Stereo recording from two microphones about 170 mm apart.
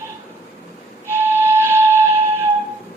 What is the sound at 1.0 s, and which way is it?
Flute, 10° right (ahead or behind).